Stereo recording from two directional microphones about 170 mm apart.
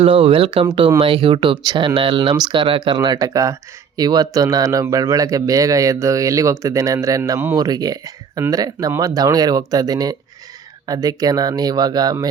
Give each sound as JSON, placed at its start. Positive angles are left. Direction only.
{"t": 0.0, "sound": "speech", "side_deg": -35}
{"t": 7.5, "sound": "speech", "side_deg": -20}